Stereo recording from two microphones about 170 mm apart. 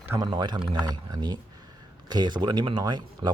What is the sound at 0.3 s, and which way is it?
Speech, 25° right (ahead or behind).